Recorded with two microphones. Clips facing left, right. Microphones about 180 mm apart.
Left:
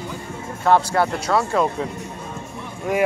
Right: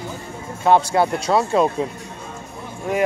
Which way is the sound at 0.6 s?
20° right (ahead or behind).